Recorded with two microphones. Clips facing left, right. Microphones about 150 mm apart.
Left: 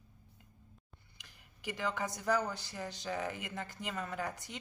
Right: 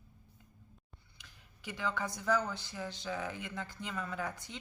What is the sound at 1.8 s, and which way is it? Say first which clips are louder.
Speech: even; 15° left (ahead or behind).